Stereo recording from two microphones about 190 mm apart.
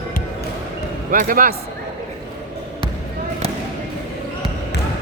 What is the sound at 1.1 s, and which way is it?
Speech, 45° right (ahead or behind).